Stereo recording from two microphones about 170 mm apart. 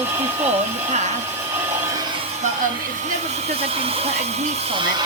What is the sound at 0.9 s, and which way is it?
Speech, 40° right (ahead or behind).